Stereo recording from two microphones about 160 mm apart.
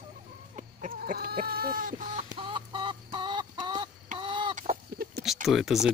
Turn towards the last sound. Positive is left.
turn(degrees=0)  # may be behind; listen again after turning